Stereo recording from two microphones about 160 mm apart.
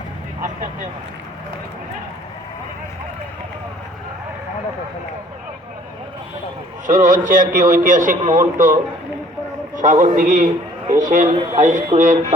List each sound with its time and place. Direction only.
0.4 s speech: 50° right (ahead or behind)
6.8 s a man's voice: 55° right (ahead or behind)